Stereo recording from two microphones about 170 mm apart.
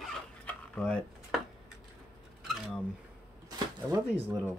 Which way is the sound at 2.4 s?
Centre (ahead or behind).